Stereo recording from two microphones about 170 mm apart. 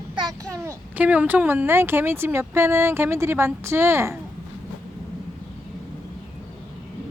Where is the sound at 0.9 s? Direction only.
10° right (ahead or behind).